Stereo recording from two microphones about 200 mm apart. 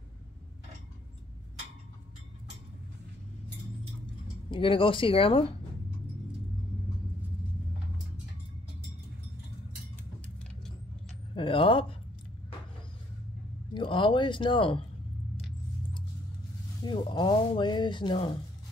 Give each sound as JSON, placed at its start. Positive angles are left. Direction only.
{"t": 4.5, "sound": "speech", "side_deg": 25}
{"t": 11.3, "sound": "speech", "side_deg": 25}
{"t": 13.7, "sound": "speech", "side_deg": 25}
{"t": 16.8, "sound": "speech", "side_deg": 25}